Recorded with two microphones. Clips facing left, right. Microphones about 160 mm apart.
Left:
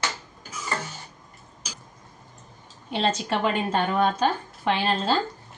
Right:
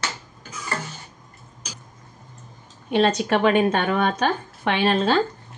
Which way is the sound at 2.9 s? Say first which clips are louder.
Right 6 dB; 65° right (ahead or behind).